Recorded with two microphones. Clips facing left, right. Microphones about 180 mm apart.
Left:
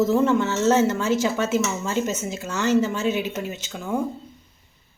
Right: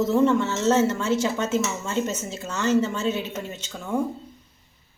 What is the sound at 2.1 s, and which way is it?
A woman's voice, 10° left (ahead or behind).